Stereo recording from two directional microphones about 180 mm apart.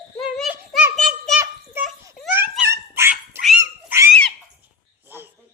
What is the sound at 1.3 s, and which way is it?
Child singing, 15° right (ahead or behind).